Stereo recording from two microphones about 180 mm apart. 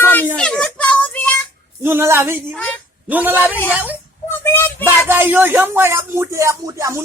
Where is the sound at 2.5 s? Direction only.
5° left (ahead or behind).